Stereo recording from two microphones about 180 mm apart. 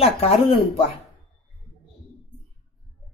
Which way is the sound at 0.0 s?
35° left (ahead or behind).